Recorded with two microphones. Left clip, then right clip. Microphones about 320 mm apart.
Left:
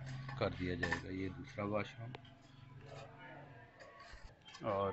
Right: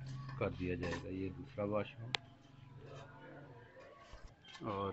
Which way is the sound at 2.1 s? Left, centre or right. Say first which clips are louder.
Right 13 dB; right.